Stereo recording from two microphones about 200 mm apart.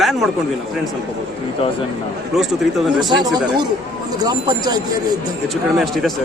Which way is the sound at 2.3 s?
Centre (ahead or behind).